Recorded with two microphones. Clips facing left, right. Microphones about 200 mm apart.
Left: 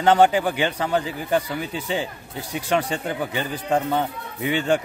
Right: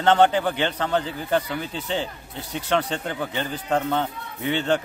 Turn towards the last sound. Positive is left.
turn(degrees=10)  # may be behind; listen again after turning